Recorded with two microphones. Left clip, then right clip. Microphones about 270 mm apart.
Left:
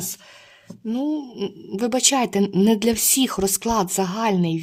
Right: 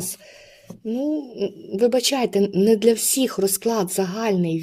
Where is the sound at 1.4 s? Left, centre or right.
Left.